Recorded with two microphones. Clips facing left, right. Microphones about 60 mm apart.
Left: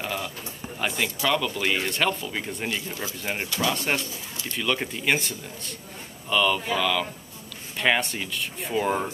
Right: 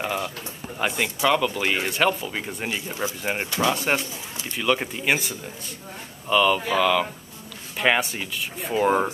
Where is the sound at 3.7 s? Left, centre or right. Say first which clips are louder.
Right 3 dB; centre.